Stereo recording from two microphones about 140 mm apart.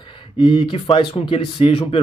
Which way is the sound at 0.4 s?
40° left (ahead or behind).